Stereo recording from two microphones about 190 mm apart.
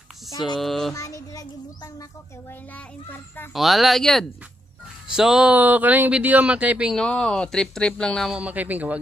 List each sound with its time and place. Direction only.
0.6 s speech: centre (ahead or behind)
0.9 s child singing: 15° left (ahead or behind)
3.5 s speech: centre (ahead or behind)